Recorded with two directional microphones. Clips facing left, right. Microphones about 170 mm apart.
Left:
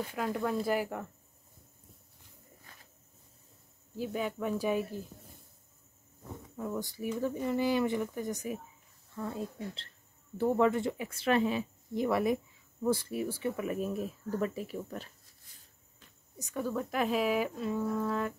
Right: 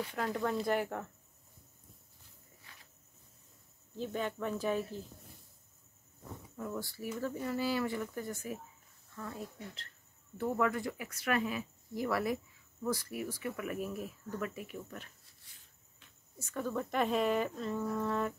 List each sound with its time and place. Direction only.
0.1 s speech: 5° left (ahead or behind)
2.7 s a sound: 45° left (ahead or behind)
3.9 s speech: 10° left (ahead or behind)
6.5 s speech: 20° left (ahead or behind)
16.3 s speech: 15° left (ahead or behind)